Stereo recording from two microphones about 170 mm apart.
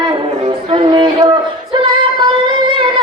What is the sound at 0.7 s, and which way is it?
Music, 30° right (ahead or behind).